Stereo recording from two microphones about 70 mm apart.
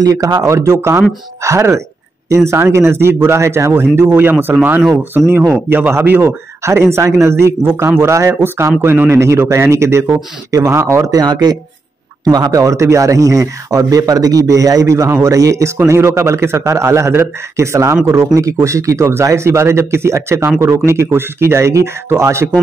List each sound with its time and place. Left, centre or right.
0.0 s speech: right
9.2 s speech: right
11.1 s speech: right
12.6 s speech: right